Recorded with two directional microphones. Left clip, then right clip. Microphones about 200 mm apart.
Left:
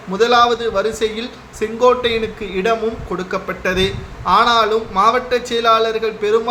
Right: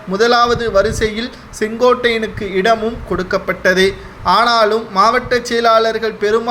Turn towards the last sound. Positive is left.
turn(degrees=-20)  # may be behind; listen again after turning